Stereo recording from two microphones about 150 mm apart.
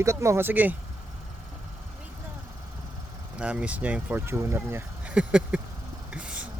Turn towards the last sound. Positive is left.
turn(degrees=-5)  # may be behind; listen again after turning